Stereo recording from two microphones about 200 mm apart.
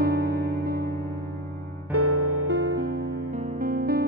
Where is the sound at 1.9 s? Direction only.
90° right.